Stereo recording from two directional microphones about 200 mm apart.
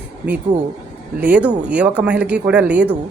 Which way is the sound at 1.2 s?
5° right (ahead or behind).